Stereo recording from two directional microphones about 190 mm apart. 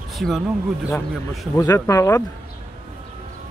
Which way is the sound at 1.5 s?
15° left (ahead or behind).